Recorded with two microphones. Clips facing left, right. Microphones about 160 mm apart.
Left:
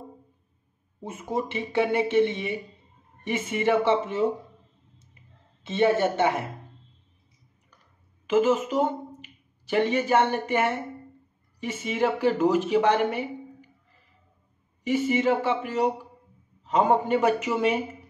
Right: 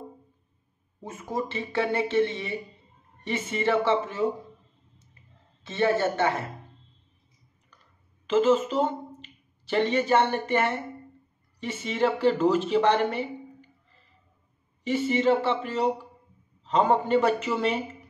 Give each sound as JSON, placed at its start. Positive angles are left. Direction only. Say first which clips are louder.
{"t": 1.0, "sound": "speech", "louder": "left 2 dB", "side_deg": 20}
{"t": 5.6, "sound": "speech", "louder": "left 2 dB", "side_deg": 15}
{"t": 8.3, "sound": "speech", "louder": "even", "side_deg": 10}